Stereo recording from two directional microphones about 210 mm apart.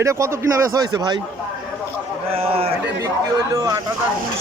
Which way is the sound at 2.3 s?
30° right (ahead or behind).